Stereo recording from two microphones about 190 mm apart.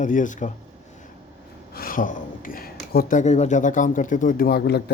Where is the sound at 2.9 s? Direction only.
50° left (ahead or behind).